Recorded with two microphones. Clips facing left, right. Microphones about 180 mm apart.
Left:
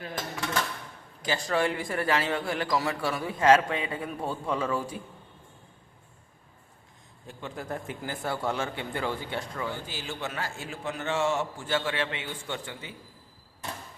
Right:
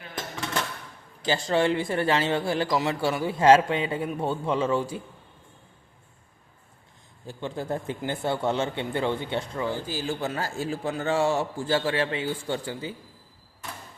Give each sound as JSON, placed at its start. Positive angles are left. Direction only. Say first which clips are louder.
{"t": 1.2, "sound": "a man's voice", "louder": "right 4 dB", "side_deg": -30}
{"t": 7.3, "sound": "a man's voice", "louder": "right 5 dB", "side_deg": -30}
{"t": 9.8, "sound": "a man's voice", "louder": "right 6 dB", "side_deg": -40}